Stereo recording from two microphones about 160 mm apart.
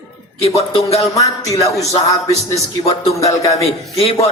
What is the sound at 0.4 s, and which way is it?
Speech, 40° left (ahead or behind).